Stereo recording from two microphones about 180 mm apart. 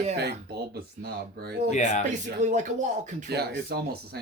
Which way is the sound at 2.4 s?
40° right (ahead or behind).